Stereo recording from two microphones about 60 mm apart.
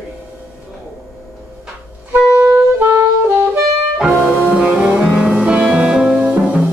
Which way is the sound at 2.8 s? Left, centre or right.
Right.